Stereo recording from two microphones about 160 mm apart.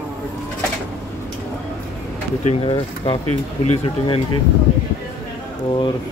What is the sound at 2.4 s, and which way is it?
Speech, 35° left (ahead or behind).